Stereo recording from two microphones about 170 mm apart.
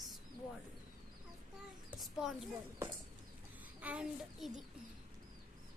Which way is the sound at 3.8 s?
5° right (ahead or behind).